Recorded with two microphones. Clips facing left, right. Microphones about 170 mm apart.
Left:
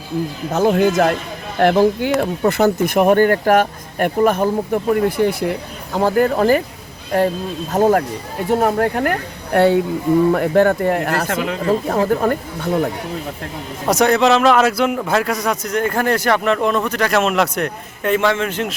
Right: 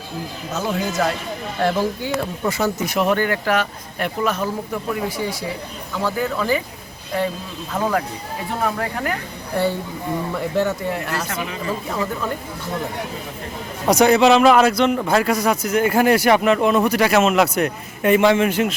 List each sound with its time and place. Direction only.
0.5 s speech: 55° left (ahead or behind)
7.7 s speech: 45° left (ahead or behind)
13.8 s speech: centre (ahead or behind)